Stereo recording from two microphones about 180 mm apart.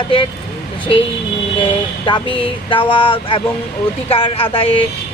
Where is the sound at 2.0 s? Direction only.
25° left (ahead or behind).